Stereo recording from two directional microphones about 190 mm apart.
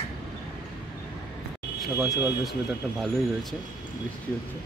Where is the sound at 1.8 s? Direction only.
Centre (ahead or behind).